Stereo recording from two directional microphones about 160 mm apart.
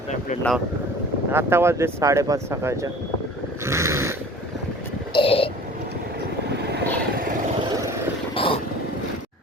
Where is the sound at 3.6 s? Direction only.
15° right (ahead or behind).